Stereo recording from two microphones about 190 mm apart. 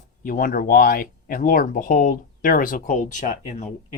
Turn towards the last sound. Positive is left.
turn(degrees=40)  # may be behind; listen again after turning